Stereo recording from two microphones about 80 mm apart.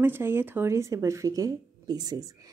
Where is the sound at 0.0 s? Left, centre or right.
Right.